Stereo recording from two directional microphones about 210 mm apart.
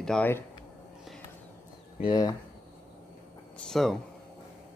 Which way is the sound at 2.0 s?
20° left (ahead or behind).